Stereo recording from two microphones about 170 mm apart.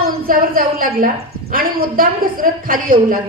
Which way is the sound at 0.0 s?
60° right (ahead or behind).